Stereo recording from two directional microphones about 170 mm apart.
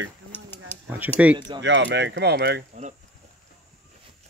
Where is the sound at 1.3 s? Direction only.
25° right (ahead or behind).